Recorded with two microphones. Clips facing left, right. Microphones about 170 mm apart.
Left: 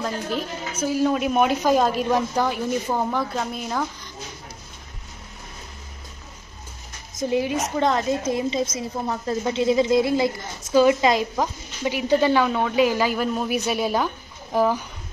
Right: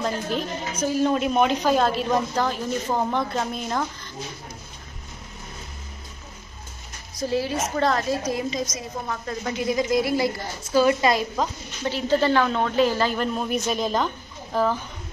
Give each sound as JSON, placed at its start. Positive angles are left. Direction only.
{"t": 0.0, "sound": "a woman's voice", "side_deg": 5}
{"t": 7.2, "sound": "a woman's voice", "side_deg": 20}